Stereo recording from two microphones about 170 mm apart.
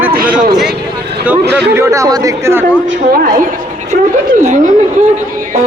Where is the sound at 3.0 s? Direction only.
55° right (ahead or behind).